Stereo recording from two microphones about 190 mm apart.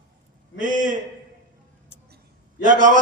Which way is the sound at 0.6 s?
45° right (ahead or behind).